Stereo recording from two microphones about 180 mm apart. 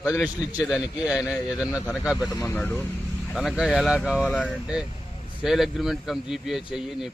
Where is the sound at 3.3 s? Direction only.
Centre (ahead or behind).